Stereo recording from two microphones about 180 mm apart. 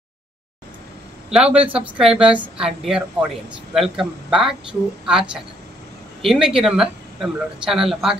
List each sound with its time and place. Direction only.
1.3 s speech: 5° right (ahead or behind)